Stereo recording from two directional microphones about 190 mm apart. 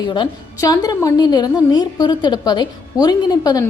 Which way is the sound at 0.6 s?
20° left (ahead or behind).